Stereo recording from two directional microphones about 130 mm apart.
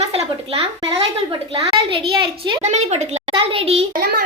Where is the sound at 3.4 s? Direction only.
45° right (ahead or behind).